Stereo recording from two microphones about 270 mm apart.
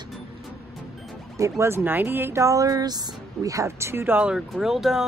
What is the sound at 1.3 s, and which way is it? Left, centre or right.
Speech, centre.